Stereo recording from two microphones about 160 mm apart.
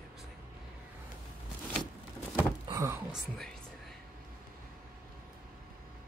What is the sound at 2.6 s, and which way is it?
Door, 20° right (ahead or behind).